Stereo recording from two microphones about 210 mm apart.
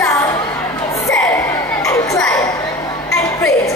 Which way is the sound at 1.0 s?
10° left (ahead or behind).